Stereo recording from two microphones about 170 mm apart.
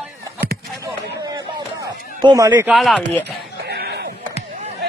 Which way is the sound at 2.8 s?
Centre (ahead or behind).